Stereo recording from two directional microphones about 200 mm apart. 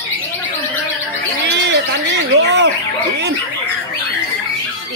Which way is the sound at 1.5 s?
60° right (ahead or behind).